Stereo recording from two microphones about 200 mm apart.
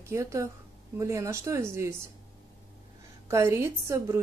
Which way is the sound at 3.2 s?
15° right (ahead or behind).